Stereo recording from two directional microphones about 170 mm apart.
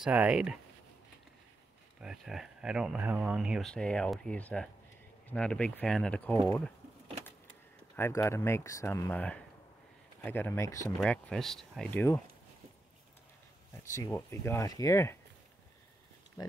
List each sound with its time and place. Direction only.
0.0 s speech: 5° right (ahead or behind)
2.0 s speech: 5° right (ahead or behind)
7.9 s speech: 15° left (ahead or behind)
11.0 s speech: 5° left (ahead or behind)
13.9 s speech: 15° left (ahead or behind)